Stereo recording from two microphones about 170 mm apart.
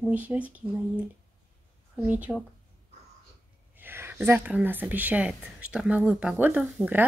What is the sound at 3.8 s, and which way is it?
Speech, 15° right (ahead or behind).